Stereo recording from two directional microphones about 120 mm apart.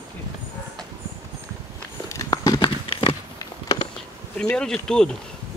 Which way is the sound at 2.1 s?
30° left (ahead or behind).